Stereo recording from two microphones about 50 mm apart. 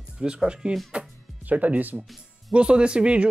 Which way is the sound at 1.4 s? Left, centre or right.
Right.